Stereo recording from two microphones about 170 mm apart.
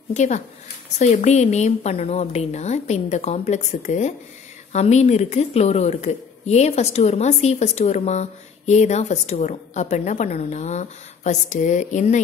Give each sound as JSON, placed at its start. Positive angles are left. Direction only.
{"t": 0.1, "sound": "a woman's voice", "side_deg": 45}